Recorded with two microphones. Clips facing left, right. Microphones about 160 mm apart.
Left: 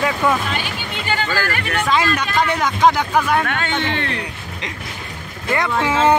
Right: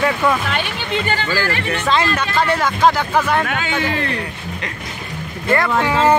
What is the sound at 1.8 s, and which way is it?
Speech, 15° left (ahead or behind).